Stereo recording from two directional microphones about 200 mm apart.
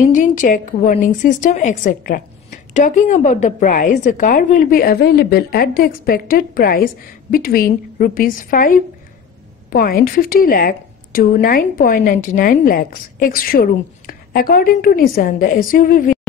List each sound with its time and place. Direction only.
0.0 s a woman's voice: 40° left (ahead or behind)